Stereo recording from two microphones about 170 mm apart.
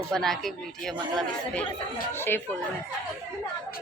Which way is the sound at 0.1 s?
Centre (ahead or behind).